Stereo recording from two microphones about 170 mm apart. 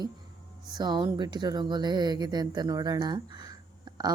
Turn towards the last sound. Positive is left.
turn(degrees=-25)  # may be behind; listen again after turning